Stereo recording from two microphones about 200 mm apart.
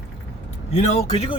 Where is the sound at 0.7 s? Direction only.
30° left (ahead or behind).